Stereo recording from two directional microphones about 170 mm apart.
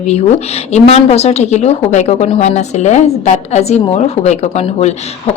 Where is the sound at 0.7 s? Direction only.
40° left (ahead or behind).